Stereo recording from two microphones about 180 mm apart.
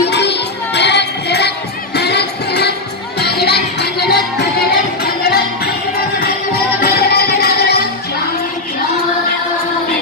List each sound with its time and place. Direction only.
0.1 s music: 70° left (ahead or behind)